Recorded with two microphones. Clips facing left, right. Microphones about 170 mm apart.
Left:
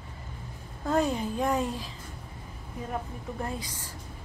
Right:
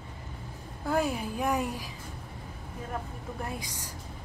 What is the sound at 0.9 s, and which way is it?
A woman's voice, 10° right (ahead or behind).